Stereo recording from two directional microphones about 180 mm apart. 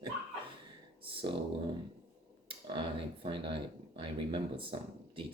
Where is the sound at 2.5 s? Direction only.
25° right (ahead or behind).